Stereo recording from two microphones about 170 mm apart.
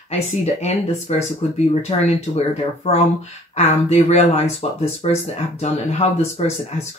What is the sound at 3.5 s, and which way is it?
Speech, 40° left (ahead or behind).